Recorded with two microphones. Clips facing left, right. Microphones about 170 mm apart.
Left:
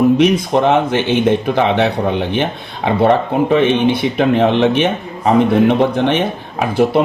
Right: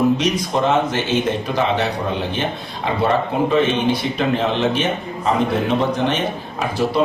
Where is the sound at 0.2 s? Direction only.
55° left (ahead or behind).